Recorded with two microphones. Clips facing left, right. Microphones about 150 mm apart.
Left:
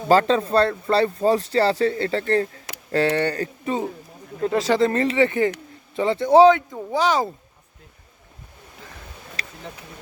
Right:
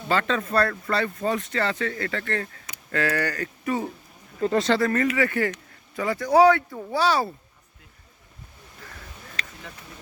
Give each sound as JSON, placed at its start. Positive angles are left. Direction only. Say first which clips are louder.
{"t": 0.1, "sound": "speech", "louder": "left 7 dB", "side_deg": 35}
{"t": 4.4, "sound": "speech", "louder": "left 1 dB", "side_deg": 0}
{"t": 4.7, "sound": "speech", "louder": "left 3 dB", "side_deg": 25}